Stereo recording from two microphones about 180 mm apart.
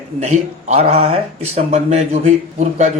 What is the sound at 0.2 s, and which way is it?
A man's voice, 40° right (ahead or behind).